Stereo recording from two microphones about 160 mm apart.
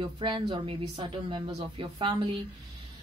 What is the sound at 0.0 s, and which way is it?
Speech, 30° right (ahead or behind).